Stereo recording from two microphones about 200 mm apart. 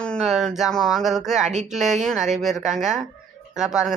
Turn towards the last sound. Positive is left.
turn(degrees=-5)  # may be behind; listen again after turning